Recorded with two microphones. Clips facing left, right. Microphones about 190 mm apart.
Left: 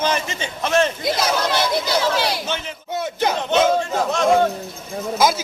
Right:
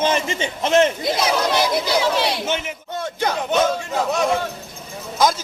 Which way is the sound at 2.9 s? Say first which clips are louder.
Left 2 dB; 10° left (ahead or behind).